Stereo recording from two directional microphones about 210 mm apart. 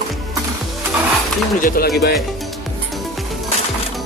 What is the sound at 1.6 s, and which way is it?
Speech, 40° left (ahead or behind).